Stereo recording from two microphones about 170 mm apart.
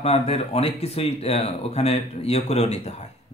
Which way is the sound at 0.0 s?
35° left (ahead or behind).